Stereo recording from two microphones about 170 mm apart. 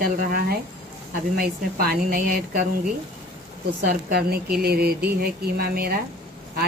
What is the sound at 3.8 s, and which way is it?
A woman's voice, 65° right (ahead or behind).